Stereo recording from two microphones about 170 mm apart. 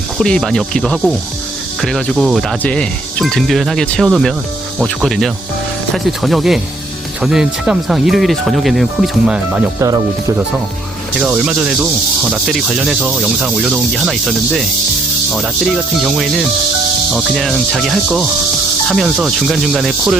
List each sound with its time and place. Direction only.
0.2 s speech: 5° left (ahead or behind)
9.8 s speech: 20° right (ahead or behind)
11.2 s speech: 5° right (ahead or behind)